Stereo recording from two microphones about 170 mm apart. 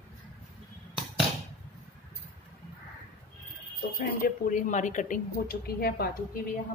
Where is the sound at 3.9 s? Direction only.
50° left (ahead or behind).